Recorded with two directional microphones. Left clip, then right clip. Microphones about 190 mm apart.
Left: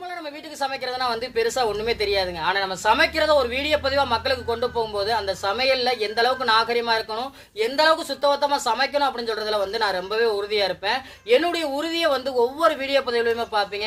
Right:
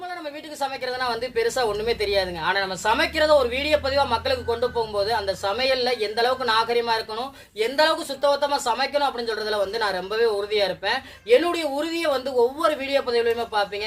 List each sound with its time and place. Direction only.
0.6 s a woman's voice: 20° left (ahead or behind)